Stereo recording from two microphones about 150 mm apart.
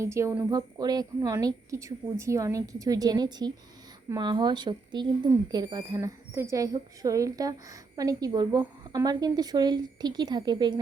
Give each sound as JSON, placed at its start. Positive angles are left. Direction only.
{"t": 0.0, "sound": "a woman's voice", "side_deg": -20}